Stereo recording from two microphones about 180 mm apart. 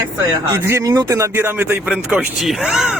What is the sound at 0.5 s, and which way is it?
Speech, 15° right (ahead or behind).